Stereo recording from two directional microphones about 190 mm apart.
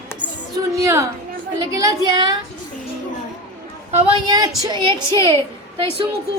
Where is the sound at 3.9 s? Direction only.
30° right (ahead or behind).